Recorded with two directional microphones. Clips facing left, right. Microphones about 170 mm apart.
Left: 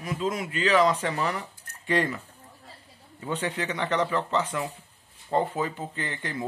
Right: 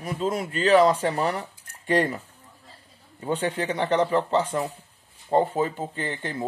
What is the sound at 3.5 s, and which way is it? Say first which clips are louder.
Speech: right 4 dB; 30° right (ahead or behind).